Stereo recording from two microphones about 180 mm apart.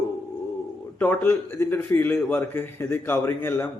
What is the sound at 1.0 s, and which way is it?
A man's voice, 10° left (ahead or behind).